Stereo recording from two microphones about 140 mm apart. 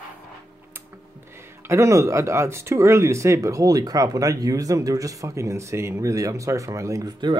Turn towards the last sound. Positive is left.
turn(degrees=-30)  # may be behind; listen again after turning